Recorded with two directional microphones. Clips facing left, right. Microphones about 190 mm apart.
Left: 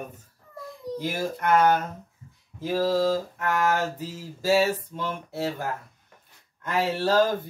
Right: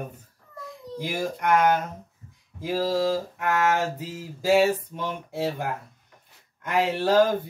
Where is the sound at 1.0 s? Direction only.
15° right (ahead or behind).